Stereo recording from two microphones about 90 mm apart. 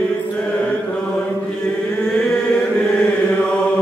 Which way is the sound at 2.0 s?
10° left (ahead or behind).